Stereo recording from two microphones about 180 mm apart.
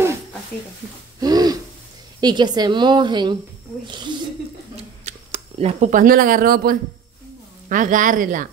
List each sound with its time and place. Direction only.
1.2 s owl: 20° right (ahead or behind)
2.1 s a woman's voice: 25° right (ahead or behind)
5.0 s a man's voice: 35° right (ahead or behind)